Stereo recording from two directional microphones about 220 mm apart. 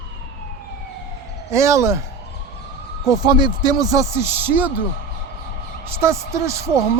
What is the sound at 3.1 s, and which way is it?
A man's voice, 20° right (ahead or behind).